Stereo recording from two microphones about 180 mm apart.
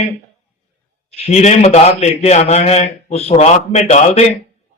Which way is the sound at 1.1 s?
35° left (ahead or behind).